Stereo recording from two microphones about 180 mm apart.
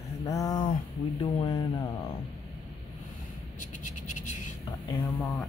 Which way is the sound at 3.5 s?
40° left (ahead or behind).